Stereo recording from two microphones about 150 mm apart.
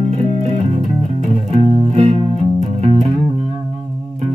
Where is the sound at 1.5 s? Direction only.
40° right (ahead or behind).